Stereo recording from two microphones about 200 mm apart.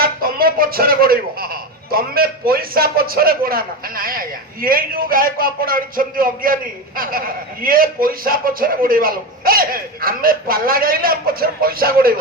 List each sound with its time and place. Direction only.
0.0 s speech: 50° right (ahead or behind)